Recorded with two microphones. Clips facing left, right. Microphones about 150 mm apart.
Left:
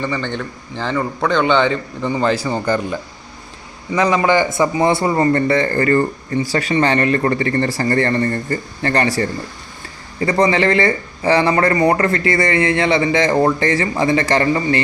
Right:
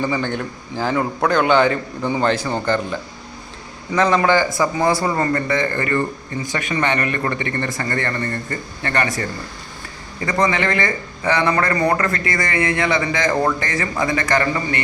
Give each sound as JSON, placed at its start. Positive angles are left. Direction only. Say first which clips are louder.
{"t": 0.0, "sound": "a man's voice", "louder": "right 1 dB", "side_deg": -10}
{"t": 2.3, "sound": "a man's voice", "louder": "left 2 dB", "side_deg": 10}
{"t": 4.4, "sound": "a man's voice", "louder": "left 3 dB", "side_deg": 20}